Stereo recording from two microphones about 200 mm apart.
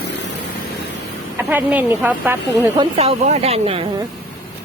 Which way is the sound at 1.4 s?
10° right (ahead or behind).